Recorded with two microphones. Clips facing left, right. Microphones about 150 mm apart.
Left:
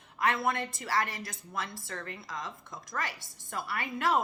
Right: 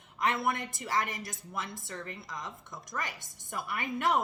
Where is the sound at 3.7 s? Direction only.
15° right (ahead or behind).